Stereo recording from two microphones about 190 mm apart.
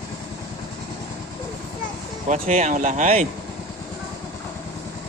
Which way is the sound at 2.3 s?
40° right (ahead or behind).